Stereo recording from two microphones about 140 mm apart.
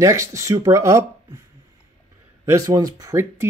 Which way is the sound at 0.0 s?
20° right (ahead or behind).